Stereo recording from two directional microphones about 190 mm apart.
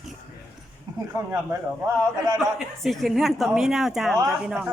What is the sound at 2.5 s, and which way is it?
A woman's voice, centre (ahead or behind).